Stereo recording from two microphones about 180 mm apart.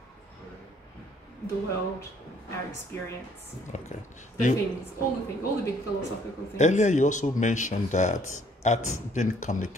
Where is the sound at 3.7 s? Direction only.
45° left (ahead or behind).